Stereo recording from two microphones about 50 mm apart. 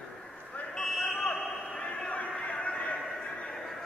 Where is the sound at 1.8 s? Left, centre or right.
Left.